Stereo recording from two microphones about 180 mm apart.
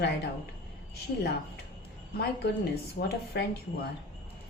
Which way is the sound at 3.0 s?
60° left (ahead or behind).